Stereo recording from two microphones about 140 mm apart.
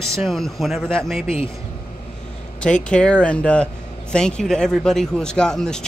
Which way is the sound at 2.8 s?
5° left (ahead or behind).